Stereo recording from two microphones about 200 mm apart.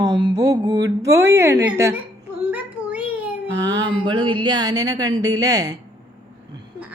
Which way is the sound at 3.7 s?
25° right (ahead or behind).